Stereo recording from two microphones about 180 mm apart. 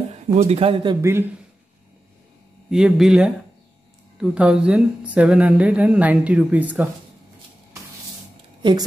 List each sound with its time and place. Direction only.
0.4 s speech: 35° right (ahead or behind)
1.0 s a woman's voice: 15° right (ahead or behind)
2.7 s a woman's voice: centre (ahead or behind)